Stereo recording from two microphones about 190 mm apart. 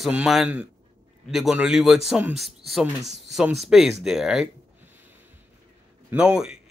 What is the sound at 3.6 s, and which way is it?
Speech, centre (ahead or behind).